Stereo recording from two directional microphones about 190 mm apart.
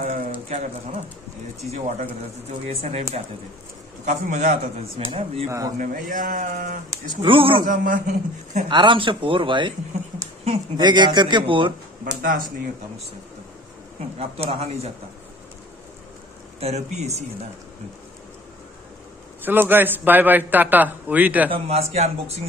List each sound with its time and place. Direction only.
0.0 s a man's voice: 40° right (ahead or behind)
2.6 s a man's voice: 35° right (ahead or behind)
5.1 s a man's voice: 30° right (ahead or behind)
5.8 s speech: 45° right (ahead or behind)
6.9 s speech: 20° right (ahead or behind)
7.6 s speech: 45° right (ahead or behind)
8.6 s speech: 25° right (ahead or behind)
14.1 s a man's voice: 30° right (ahead or behind)
16.5 s a man's voice: 35° right (ahead or behind)
19.4 s a man's voice: 10° right (ahead or behind)
21.5 s a man's voice: 35° right (ahead or behind)